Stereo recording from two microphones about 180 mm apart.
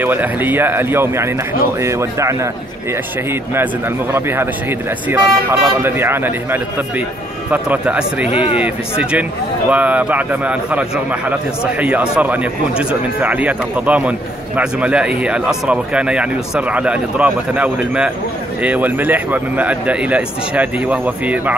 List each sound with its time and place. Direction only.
0.0 s a man's voice: 10° right (ahead or behind)
4.1 s a man's voice: 15° right (ahead or behind)
8.3 s speech: 35° left (ahead or behind)
8.5 s a man's voice: 5° right (ahead or behind)